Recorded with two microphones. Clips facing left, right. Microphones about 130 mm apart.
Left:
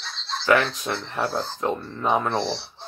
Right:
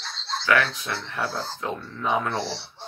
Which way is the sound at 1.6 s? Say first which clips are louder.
Left 4 dB; 40° left (ahead or behind).